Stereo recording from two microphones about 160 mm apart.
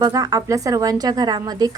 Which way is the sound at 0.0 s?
20° right (ahead or behind).